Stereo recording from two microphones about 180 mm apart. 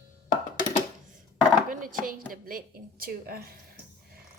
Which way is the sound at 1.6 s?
50° right (ahead or behind).